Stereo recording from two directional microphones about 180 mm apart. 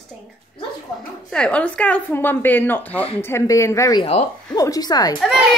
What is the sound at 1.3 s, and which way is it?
A woman's voice, 5° left (ahead or behind).